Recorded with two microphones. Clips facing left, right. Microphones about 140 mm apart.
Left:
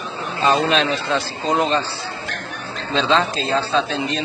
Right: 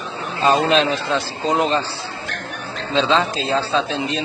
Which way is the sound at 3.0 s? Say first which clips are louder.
Right 1 dB; centre (ahead or behind).